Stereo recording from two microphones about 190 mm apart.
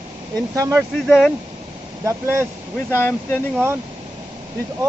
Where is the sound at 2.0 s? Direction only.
15° right (ahead or behind).